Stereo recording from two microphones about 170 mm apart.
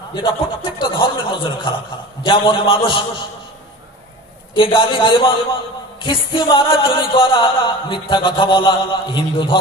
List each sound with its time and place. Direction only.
0.1 s music: 30° left (ahead or behind)
2.2 s a man's voice: 30° left (ahead or behind)
4.5 s music: 30° left (ahead or behind)